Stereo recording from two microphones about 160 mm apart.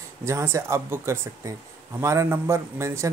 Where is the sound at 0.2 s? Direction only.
15° right (ahead or behind).